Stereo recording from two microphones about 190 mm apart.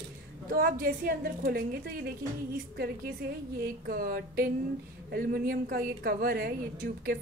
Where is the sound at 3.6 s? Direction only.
50° right (ahead or behind).